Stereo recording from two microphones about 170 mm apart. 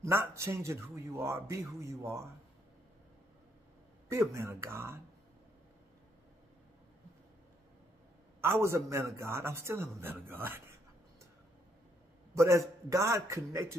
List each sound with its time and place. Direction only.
0.0 s speech: 15° right (ahead or behind)
4.1 s speech: 15° right (ahead or behind)
8.4 s speech: 15° right (ahead or behind)
12.4 s speech: 15° right (ahead or behind)